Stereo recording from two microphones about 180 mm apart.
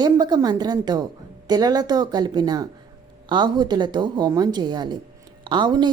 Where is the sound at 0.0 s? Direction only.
25° right (ahead or behind).